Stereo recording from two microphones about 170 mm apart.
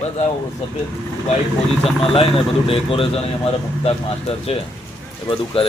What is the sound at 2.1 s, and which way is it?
A man's voice, 35° left (ahead or behind).